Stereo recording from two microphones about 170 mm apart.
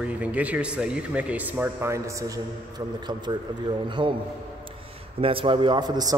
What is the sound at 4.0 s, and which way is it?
Speech, 25° right (ahead or behind).